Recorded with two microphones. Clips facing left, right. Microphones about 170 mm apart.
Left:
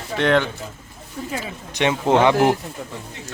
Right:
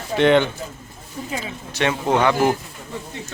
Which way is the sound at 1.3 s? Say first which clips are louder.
Even; 20° left (ahead or behind).